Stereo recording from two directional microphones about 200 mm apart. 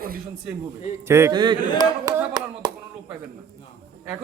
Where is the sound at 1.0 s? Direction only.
10° right (ahead or behind).